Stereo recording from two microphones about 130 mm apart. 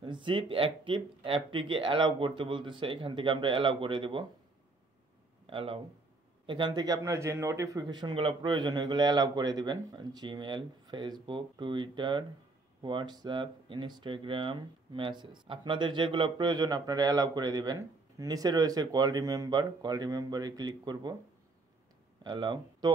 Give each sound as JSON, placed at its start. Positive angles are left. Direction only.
{"t": 0.0, "sound": "speech", "side_deg": -40}
{"t": 5.5, "sound": "speech", "side_deg": -45}
{"t": 22.2, "sound": "speech", "side_deg": -35}